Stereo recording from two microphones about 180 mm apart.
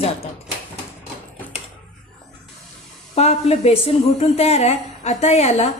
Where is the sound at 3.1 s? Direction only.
35° left (ahead or behind).